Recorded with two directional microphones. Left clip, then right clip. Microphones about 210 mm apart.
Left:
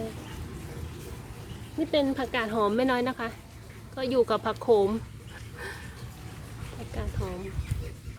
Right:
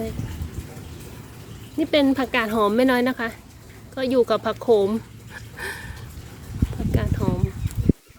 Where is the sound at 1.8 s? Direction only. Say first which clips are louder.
Right 7 dB; 35° right (ahead or behind); by 5.0 s 15° right (ahead or behind).